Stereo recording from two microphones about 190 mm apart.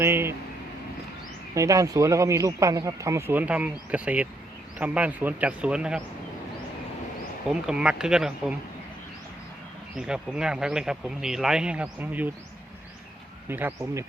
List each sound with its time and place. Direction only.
0.0 s a sound: 15° right (ahead or behind)
1.5 s speech: 15° right (ahead or behind)
7.4 s speech: 5° right (ahead or behind)
9.9 s speech: 5° right (ahead or behind)
13.5 s speech: 10° right (ahead or behind)